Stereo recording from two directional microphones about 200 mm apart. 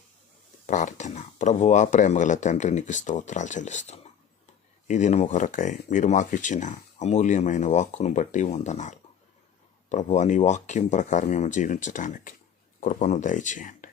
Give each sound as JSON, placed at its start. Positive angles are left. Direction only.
{"t": 0.7, "sound": "speech", "side_deg": 40}